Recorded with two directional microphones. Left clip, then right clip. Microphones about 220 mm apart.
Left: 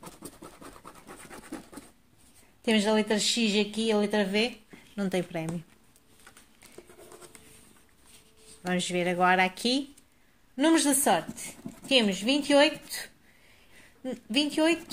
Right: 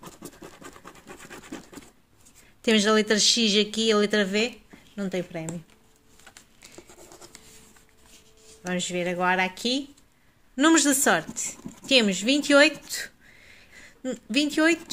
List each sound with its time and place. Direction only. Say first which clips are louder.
2.6 s speech: right 4 dB; 30° right (ahead or behind)
4.7 s speech: even; 5° left (ahead or behind)
8.6 s speech: even; centre (ahead or behind)
10.5 s speech: right 4 dB; 30° right (ahead or behind)